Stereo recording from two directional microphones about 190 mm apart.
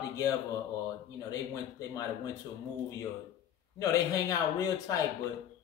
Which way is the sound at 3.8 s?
20° left (ahead or behind).